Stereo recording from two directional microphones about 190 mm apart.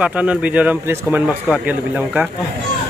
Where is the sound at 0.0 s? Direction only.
5° right (ahead or behind).